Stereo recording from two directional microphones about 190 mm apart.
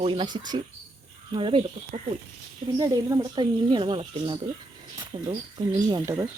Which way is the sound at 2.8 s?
15° right (ahead or behind).